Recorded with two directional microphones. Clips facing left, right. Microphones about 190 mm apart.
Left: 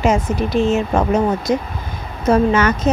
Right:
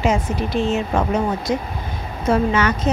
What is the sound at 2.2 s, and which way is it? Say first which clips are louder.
Speech: left 4 dB; 45° left (ahead or behind).